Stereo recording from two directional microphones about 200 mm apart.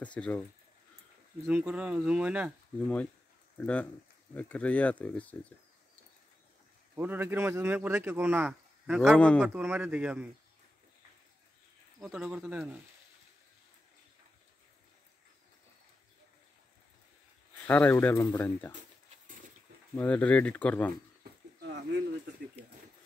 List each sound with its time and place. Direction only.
0.0 s speech: 5° left (ahead or behind)
1.5 s speech: 5° right (ahead or behind)
3.5 s speech: 5° left (ahead or behind)
7.0 s speech: 10° right (ahead or behind)
9.1 s speech: 5° left (ahead or behind)
9.5 s speech: 10° right (ahead or behind)
12.0 s speech: 5° right (ahead or behind)
17.6 s speech: 10° left (ahead or behind)
20.0 s speech: 5° left (ahead or behind)
21.2 s a sound: 50° right (ahead or behind)